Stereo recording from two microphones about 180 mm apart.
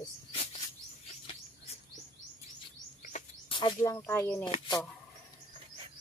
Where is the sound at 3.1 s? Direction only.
40° left (ahead or behind).